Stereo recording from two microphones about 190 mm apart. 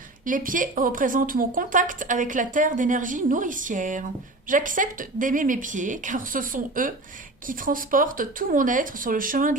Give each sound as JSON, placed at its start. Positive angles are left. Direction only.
{"t": 0.3, "sound": "speech", "side_deg": -45}